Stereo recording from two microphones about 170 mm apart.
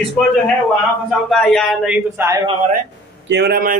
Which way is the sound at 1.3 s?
5° left (ahead or behind).